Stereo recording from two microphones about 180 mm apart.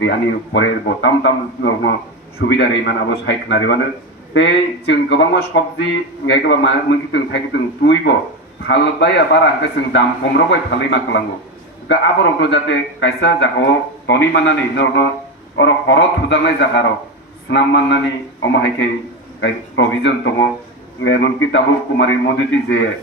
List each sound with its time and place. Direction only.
0.0 s a man's voice: 80° left